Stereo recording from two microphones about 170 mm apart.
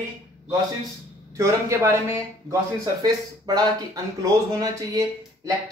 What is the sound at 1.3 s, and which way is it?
Speech, 15° right (ahead or behind).